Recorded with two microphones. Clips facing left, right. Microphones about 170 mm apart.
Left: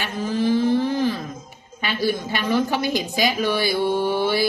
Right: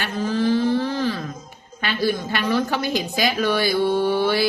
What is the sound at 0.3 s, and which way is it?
Vehicle, 20° left (ahead or behind).